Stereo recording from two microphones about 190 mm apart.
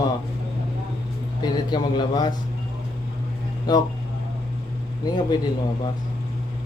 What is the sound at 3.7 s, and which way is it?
Speech, 20° left (ahead or behind).